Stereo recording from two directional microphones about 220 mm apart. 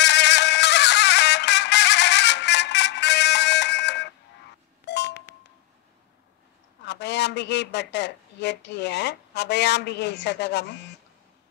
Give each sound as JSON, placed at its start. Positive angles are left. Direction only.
{"t": 0.0, "sound": "music", "side_deg": 50}
{"t": 4.8, "sound": "a sound", "side_deg": 50}
{"t": 6.8, "sound": "a man's voice", "side_deg": 50}